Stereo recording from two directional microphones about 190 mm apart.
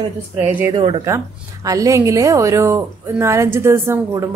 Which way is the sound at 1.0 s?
15° right (ahead or behind).